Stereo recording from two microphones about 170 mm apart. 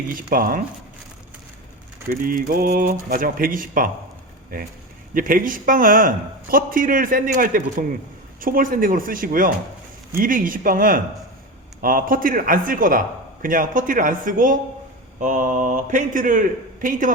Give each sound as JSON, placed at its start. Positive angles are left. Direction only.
{"t": 0.1, "sound": "a man's voice", "side_deg": -55}
{"t": 2.0, "sound": "a man's voice", "side_deg": -55}